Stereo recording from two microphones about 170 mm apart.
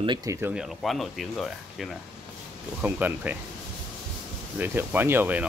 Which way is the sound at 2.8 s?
10° right (ahead or behind).